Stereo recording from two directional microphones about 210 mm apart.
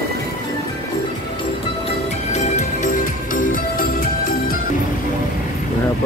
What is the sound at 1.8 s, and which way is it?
Music, 30° left (ahead or behind).